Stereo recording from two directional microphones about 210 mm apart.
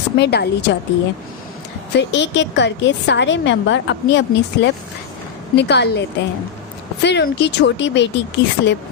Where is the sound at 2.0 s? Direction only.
55° left (ahead or behind).